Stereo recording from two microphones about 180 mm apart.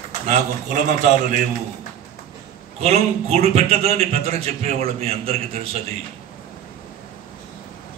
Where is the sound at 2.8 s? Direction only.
35° right (ahead or behind).